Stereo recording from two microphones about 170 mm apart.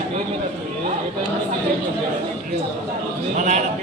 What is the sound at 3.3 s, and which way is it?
Speech, 45° right (ahead or behind).